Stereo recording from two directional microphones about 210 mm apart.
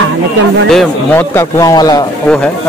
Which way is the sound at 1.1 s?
15° left (ahead or behind).